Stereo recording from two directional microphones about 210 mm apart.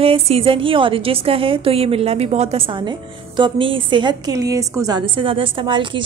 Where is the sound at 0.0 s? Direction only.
25° right (ahead or behind).